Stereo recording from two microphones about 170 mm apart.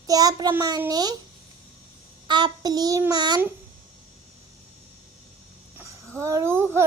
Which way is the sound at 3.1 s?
25° right (ahead or behind).